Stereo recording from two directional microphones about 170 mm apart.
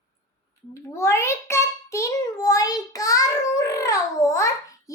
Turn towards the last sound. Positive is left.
turn(degrees=20)  # may be behind; listen again after turning